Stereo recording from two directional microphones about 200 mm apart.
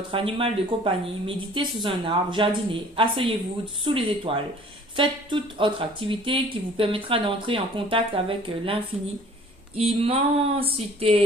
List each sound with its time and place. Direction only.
0.1 s speech: 25° right (ahead or behind)